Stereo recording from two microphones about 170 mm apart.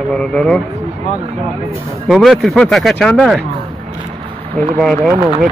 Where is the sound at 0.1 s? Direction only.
5° left (ahead or behind).